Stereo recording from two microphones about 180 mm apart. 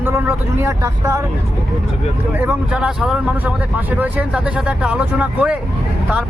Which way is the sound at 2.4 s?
5° right (ahead or behind).